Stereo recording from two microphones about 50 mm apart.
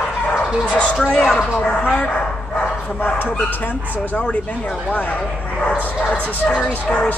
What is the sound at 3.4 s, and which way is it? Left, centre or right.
Speech, left.